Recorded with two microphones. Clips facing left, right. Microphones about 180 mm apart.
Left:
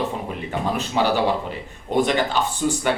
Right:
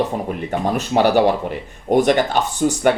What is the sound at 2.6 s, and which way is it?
Speech, 50° right (ahead or behind).